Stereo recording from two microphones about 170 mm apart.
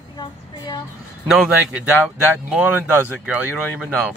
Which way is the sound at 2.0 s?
5° right (ahead or behind).